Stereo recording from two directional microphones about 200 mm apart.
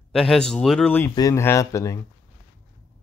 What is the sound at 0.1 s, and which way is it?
Speech, centre (ahead or behind).